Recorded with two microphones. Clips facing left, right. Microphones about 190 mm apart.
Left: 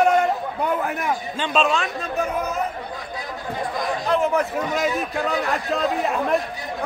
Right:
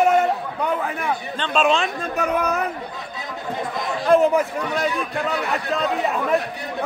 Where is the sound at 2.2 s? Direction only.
65° right (ahead or behind).